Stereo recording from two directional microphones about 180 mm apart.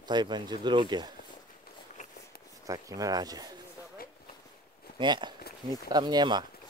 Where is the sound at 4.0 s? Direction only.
55° left (ahead or behind).